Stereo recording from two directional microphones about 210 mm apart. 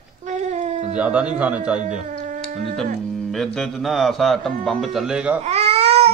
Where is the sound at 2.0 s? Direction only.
40° right (ahead or behind).